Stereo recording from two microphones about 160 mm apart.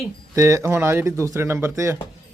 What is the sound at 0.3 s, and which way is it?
Speech, 20° right (ahead or behind).